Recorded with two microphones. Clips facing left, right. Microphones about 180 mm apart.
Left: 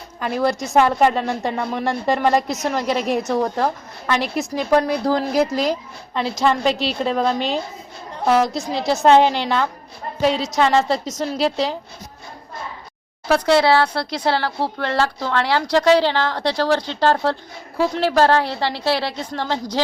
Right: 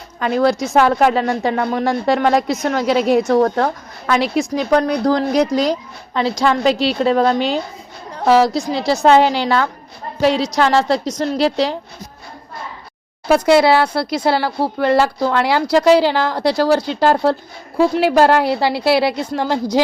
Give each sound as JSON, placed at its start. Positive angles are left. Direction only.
{"t": 0.3, "sound": "a woman's voice", "side_deg": -75}
{"t": 0.5, "sound": "a woman's voice", "side_deg": 0}
{"t": 0.8, "sound": "speech", "side_deg": -90}
{"t": 1.1, "sound": "a woman's voice", "side_deg": 0}
{"t": 1.5, "sound": "a woman's voice", "side_deg": -80}
{"t": 1.8, "sound": "a woman's voice", "side_deg": 0}
{"t": 13.2, "sound": "a woman's voice", "side_deg": -10}